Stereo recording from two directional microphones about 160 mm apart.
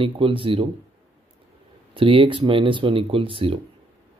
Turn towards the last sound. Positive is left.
turn(degrees=-35)  # may be behind; listen again after turning